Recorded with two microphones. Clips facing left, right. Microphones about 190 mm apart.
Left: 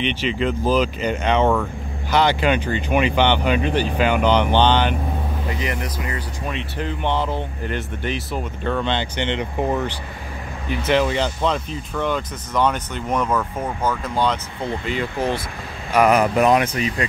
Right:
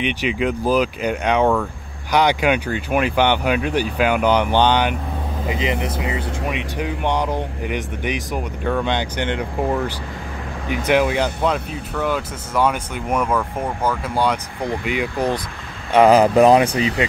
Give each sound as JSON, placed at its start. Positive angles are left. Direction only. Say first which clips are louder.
{"t": 0.0, "sound": "speech", "louder": "right 1 dB", "side_deg": -10}
{"t": 9.4, "sound": "speech", "louder": "right 1 dB", "side_deg": 5}
{"t": 10.7, "sound": "speech", "louder": "right 2 dB", "side_deg": -15}
{"t": 15.9, "sound": "speech", "louder": "right 4 dB", "side_deg": -30}